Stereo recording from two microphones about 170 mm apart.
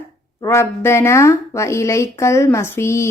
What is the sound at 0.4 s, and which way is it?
Speech, 15° left (ahead or behind).